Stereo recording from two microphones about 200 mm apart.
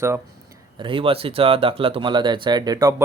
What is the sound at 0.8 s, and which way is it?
Speech, 25° right (ahead or behind).